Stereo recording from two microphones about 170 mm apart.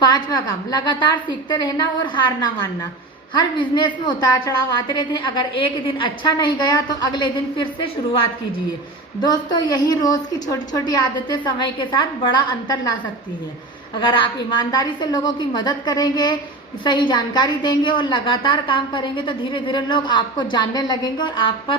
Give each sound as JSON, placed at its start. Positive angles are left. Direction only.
{"t": 0.0, "sound": "a woman's voice", "side_deg": 25}
{"t": 9.2, "sound": "a woman's voice", "side_deg": 25}
{"t": 14.0, "sound": "a woman's voice", "side_deg": 25}